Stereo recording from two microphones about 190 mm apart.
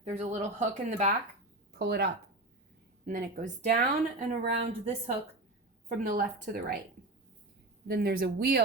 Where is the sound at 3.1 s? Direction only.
40° right (ahead or behind).